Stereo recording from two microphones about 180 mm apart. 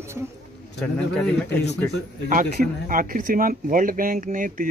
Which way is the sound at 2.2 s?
45° right (ahead or behind).